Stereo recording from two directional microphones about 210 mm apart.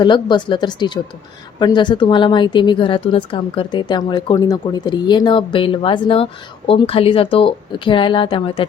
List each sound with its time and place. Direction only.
0.0 s speech: 20° left (ahead or behind)